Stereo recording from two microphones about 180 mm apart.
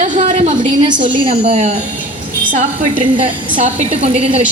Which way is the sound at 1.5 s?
40° right (ahead or behind).